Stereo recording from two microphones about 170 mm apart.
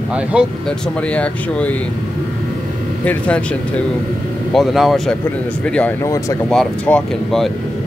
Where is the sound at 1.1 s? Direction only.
10° left (ahead or behind).